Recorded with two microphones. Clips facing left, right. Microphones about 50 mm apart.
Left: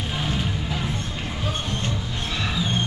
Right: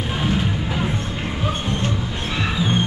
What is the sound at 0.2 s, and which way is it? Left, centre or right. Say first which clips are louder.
Music: right 6 dB; centre.